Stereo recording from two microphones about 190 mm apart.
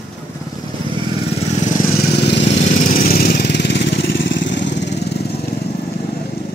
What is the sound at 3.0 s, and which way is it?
Vehicle, 50° left (ahead or behind).